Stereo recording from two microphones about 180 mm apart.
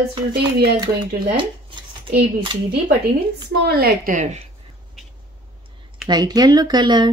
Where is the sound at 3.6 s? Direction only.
60° right (ahead or behind); by 4.4 s 45° right (ahead or behind).